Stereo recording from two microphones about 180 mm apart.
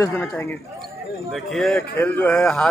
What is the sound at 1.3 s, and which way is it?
A man's voice, centre (ahead or behind).